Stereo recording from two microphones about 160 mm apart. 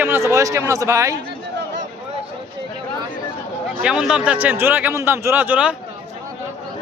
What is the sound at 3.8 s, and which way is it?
A man's voice, 5° right (ahead or behind).